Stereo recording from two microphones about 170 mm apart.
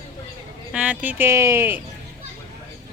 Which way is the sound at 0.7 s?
10° right (ahead or behind).